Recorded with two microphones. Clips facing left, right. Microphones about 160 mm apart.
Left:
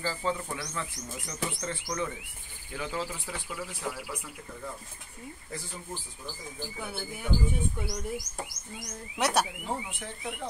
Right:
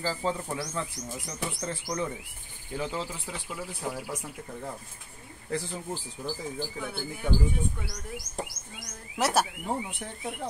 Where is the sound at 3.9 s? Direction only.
40° right (ahead or behind).